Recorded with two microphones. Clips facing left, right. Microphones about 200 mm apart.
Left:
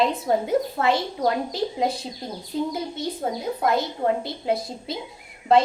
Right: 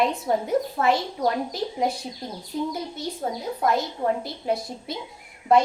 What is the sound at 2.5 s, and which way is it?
A woman's voice, 25° left (ahead or behind).